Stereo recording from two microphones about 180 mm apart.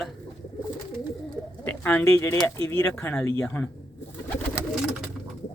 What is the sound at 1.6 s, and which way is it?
Speech, 10° left (ahead or behind).